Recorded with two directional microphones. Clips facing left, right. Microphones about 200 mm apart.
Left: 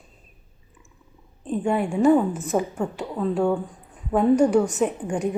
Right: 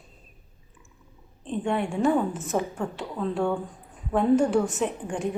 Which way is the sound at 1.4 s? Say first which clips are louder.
Left 4 dB; 5° left (ahead or behind).